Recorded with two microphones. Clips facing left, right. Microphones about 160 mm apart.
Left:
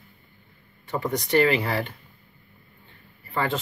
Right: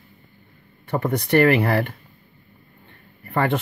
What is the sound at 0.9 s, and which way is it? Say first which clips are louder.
Speech: right 4 dB; 55° right (ahead or behind).